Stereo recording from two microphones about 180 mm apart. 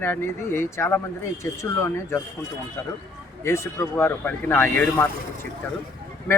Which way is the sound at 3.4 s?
15° left (ahead or behind).